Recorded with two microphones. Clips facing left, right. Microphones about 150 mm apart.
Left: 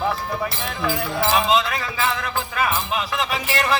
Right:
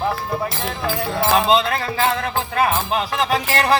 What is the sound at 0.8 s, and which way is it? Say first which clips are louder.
Speech: right 1 dB; 30° right (ahead or behind).